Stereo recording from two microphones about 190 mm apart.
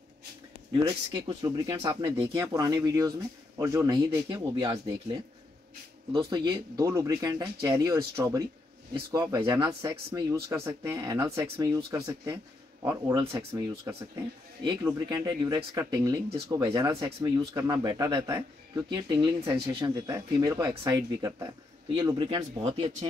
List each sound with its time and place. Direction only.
0.8 s speech: 20° right (ahead or behind)
6.1 s speech: 25° right (ahead or behind)
10.5 s speech: 15° right (ahead or behind); by 23.0 s 30° right (ahead or behind)